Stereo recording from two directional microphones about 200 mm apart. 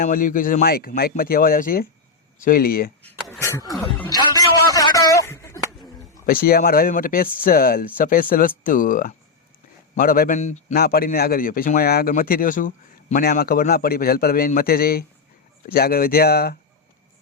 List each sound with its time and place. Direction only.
0.0 s speech: 45° left (ahead or behind)
3.0 s a sound: 5° left (ahead or behind)
6.2 s a man's voice: 45° left (ahead or behind)
10.8 s speech: 50° left (ahead or behind)